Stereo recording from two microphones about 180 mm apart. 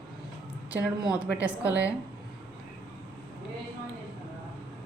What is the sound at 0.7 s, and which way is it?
Speech, 10° right (ahead or behind).